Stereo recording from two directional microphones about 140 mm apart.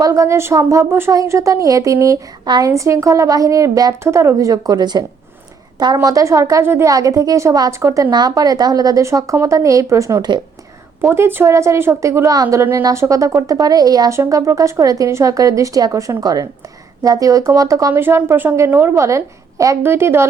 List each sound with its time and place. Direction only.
0.0 s speech: 20° right (ahead or behind)
11.1 s speech: 15° right (ahead or behind)